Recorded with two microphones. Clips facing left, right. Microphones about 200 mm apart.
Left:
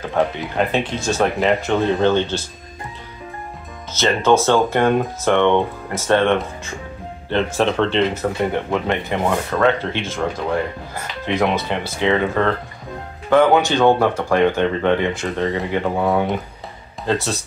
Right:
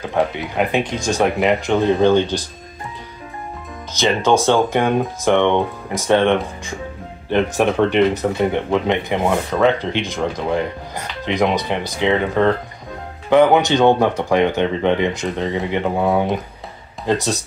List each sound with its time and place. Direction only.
0.6 s speech: 15° right (ahead or behind)
3.9 s speech: 15° right (ahead or behind)